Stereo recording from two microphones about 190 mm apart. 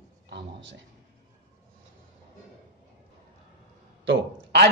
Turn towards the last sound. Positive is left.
turn(degrees=-65)  # may be behind; listen again after turning